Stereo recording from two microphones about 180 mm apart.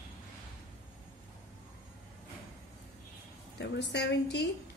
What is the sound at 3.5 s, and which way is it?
Female singing, 70° left (ahead or behind).